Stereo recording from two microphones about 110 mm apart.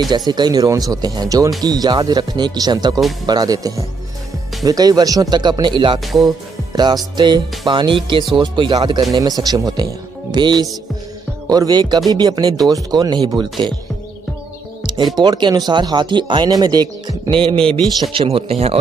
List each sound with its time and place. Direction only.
0.3 s speech: 40° right (ahead or behind)
6.2 s music: 40° right (ahead or behind)
7.2 s speech: 45° right (ahead or behind)
15.1 s speech: 45° right (ahead or behind)
17.3 s speech: 55° right (ahead or behind)